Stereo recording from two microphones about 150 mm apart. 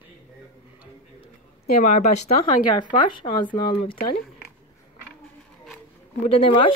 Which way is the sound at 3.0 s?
30° left (ahead or behind).